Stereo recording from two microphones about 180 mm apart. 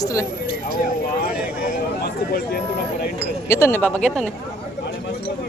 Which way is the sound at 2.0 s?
60° left (ahead or behind).